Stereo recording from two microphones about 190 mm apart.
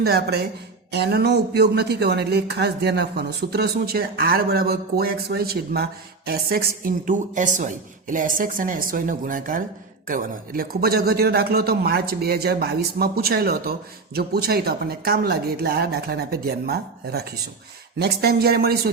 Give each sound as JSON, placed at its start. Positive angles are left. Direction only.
{"t": 0.0, "sound": "speech", "side_deg": -55}